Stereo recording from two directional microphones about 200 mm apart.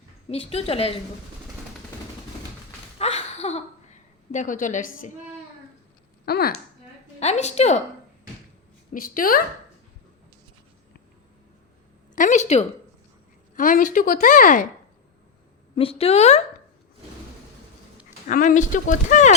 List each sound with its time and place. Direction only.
0.3 s a woman's voice: 30° left (ahead or behind)
3.0 s a sound: 30° left (ahead or behind)
4.3 s speech: 40° left (ahead or behind)
6.2 s speech: 50° left (ahead or behind)
7.2 s speech: 35° left (ahead or behind)
8.9 s a woman's voice: 45° left (ahead or behind)
12.1 s speech: 40° left (ahead or behind)
15.7 s speech: 30° left (ahead or behind)
18.3 s speech: 40° left (ahead or behind)